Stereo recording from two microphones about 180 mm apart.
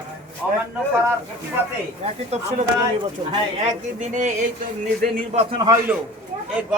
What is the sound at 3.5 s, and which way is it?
Speech, 40° right (ahead or behind).